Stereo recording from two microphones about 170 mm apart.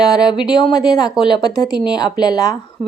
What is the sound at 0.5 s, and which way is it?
Speech, 25° left (ahead or behind).